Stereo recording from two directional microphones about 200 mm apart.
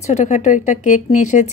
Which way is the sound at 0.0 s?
35° left (ahead or behind).